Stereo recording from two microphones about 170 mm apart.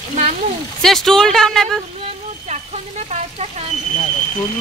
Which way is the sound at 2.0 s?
40° right (ahead or behind).